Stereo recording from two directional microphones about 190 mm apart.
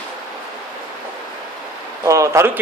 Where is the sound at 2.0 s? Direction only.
15° right (ahead or behind).